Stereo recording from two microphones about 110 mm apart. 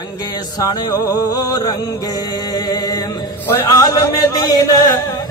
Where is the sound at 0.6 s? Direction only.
35° left (ahead or behind).